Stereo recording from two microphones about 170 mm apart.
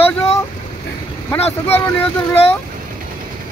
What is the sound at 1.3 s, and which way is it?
Speech, 10° left (ahead or behind).